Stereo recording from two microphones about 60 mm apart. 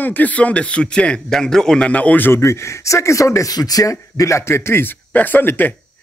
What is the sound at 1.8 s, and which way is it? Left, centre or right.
Speech, left.